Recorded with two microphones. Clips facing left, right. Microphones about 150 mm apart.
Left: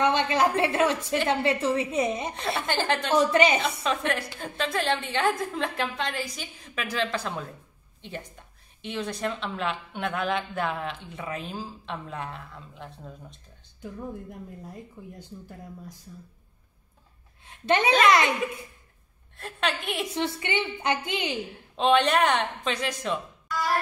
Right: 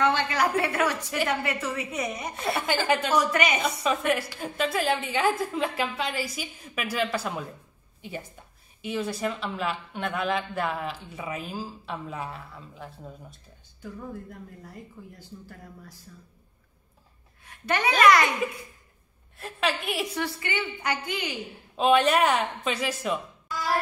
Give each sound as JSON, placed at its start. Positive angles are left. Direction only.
{"t": 0.0, "sound": "speech", "side_deg": 20}
{"t": 2.6, "sound": "a woman's voice", "side_deg": -10}
{"t": 3.1, "sound": "speech", "side_deg": 25}
{"t": 3.6, "sound": "a woman's voice", "side_deg": -5}
{"t": 13.7, "sound": "speech", "side_deg": 20}
{"t": 17.5, "sound": "speech", "side_deg": 25}
{"t": 19.3, "sound": "a woman's voice", "side_deg": 0}
{"t": 20.2, "sound": "speech", "side_deg": 20}
{"t": 21.7, "sound": "a woman's voice", "side_deg": -5}